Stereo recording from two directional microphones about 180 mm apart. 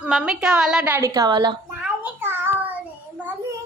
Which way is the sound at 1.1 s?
20° right (ahead or behind).